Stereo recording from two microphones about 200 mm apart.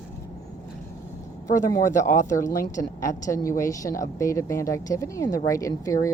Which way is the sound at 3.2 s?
15° left (ahead or behind).